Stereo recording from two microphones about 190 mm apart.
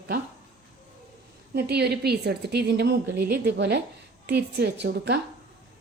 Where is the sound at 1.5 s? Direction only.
60° right (ahead or behind).